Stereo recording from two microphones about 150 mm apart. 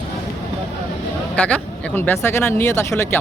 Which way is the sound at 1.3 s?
10° left (ahead or behind).